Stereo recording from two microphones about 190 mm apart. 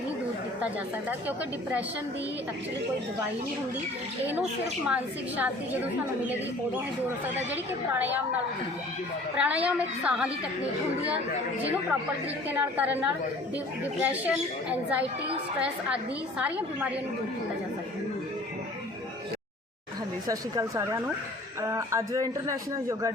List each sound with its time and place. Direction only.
4.9 s a man's voice: 10° right (ahead or behind)
7.5 s a man's voice: 10° right (ahead or behind)
9.4 s a man's voice: 5° right (ahead or behind)
12.5 s a man's voice: 10° right (ahead or behind)
16.4 s a man's voice: 5° right (ahead or behind)
20.2 s a man's voice: 15° right (ahead or behind)